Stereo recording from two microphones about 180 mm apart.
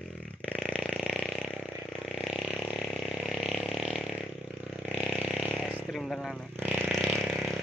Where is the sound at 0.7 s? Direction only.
5° right (ahead or behind).